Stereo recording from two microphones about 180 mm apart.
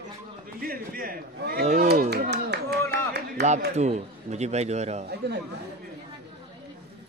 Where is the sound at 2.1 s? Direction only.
65° right (ahead or behind).